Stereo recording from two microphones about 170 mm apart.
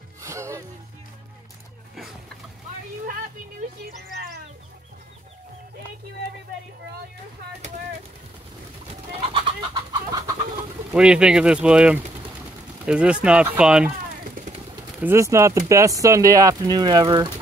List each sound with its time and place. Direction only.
0.2 s music: 15° right (ahead or behind)
9.1 s chicken: 30° right (ahead or behind)
10.9 s speech: 5° right (ahead or behind)
15.0 s speech: 15° right (ahead or behind)